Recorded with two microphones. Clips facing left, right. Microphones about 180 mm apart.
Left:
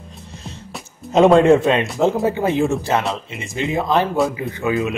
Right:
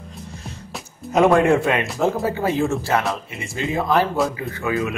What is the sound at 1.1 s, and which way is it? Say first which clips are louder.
Speech: left 4 dB; 25° left (ahead or behind).